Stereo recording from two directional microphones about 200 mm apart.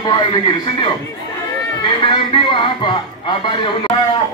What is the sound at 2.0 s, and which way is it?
A man's voice, 25° left (ahead or behind).